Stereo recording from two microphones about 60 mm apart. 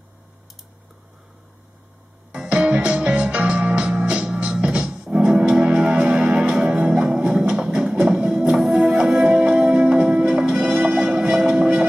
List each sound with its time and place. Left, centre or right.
2.3 s music: centre